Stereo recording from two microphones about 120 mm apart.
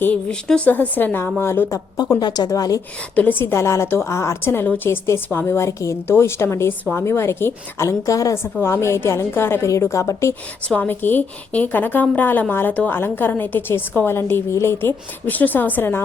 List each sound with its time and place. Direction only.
0.0 s a woman's voice: 10° left (ahead or behind)
2.1 s a woman's voice: 35° left (ahead or behind)
3.2 s a woman's voice: 15° left (ahead or behind)